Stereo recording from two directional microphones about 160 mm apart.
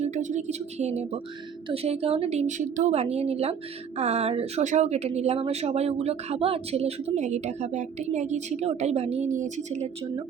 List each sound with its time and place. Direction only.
0.0 s a woman's voice: 50° right (ahead or behind)